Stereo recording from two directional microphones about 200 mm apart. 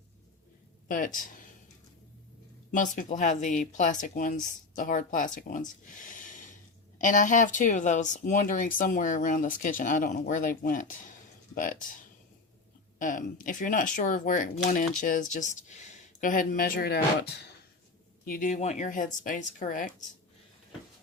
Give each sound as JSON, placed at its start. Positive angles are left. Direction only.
{"t": 0.9, "sound": "speech", "side_deg": 40}
{"t": 2.7, "sound": "speech", "side_deg": 40}
{"t": 5.9, "sound": "a sound", "side_deg": 40}
{"t": 7.0, "sound": "speech", "side_deg": 40}
{"t": 13.0, "sound": "speech", "side_deg": 40}
{"t": 18.3, "sound": "speech", "side_deg": 40}